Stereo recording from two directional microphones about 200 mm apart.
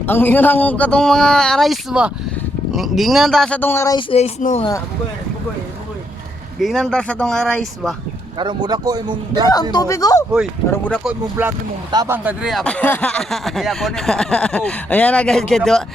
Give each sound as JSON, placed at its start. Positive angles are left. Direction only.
{"t": 0.0, "sound": "speech", "side_deg": 10}
{"t": 3.9, "sound": "speech", "side_deg": 30}
{"t": 6.6, "sound": "speech", "side_deg": 0}
{"t": 8.4, "sound": "a man's voice", "side_deg": -20}
{"t": 9.7, "sound": "speech", "side_deg": 15}
{"t": 11.0, "sound": "speech", "side_deg": -10}